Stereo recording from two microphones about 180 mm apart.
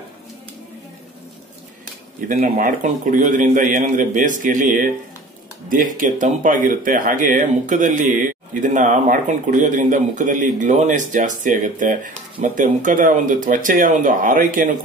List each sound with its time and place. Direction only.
2.2 s speech: 45° right (ahead or behind)